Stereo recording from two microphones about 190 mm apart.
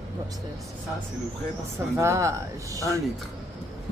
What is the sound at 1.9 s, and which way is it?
Speech, 15° right (ahead or behind).